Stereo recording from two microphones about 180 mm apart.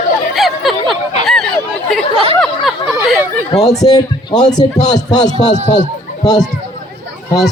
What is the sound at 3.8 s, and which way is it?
A man's voice, 20° left (ahead or behind).